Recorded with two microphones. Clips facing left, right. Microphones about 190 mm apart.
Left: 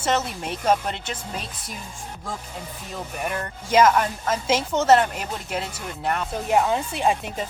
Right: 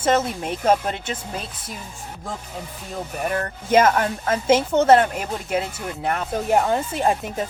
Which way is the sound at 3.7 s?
60° right (ahead or behind).